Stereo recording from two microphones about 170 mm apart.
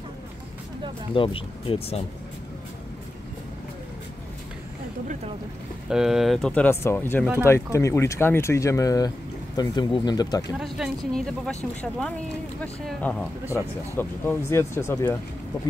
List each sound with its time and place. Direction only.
1.1 s speech: 30° left (ahead or behind)
5.9 s speech: 5° right (ahead or behind); by 10.5 s 25° left (ahead or behind)
10.6 s speech: centre (ahead or behind); by 15.1 s 15° left (ahead or behind)